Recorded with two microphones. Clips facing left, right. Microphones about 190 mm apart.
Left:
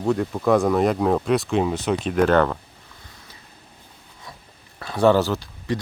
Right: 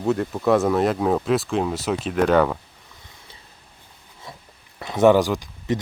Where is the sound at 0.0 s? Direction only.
Centre (ahead or behind).